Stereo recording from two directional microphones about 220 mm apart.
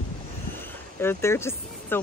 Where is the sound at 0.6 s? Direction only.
10° left (ahead or behind).